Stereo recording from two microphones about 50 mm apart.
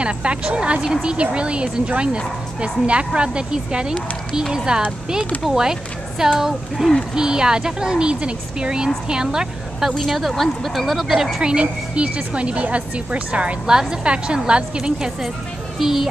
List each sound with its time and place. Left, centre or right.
0.0 s a woman's voice: right; by 11.4 s centre
11.4 s a woman's voice: right
13.7 s a woman's voice: centre